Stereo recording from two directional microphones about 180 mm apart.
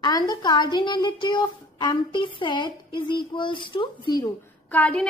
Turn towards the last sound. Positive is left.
turn(degrees=5)  # may be behind; listen again after turning